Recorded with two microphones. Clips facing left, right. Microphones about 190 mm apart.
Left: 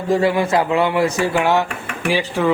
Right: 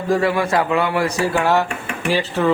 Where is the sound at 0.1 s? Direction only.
25° left (ahead or behind).